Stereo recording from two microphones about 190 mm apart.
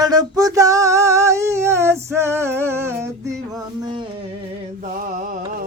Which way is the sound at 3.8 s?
25° right (ahead or behind).